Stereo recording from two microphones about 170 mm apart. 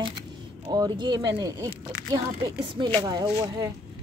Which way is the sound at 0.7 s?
25° right (ahead or behind).